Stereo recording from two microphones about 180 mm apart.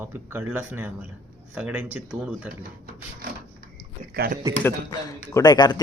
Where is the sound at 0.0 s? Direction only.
10° right (ahead or behind).